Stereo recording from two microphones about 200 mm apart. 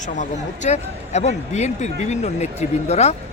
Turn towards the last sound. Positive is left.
turn(degrees=35)  # may be behind; listen again after turning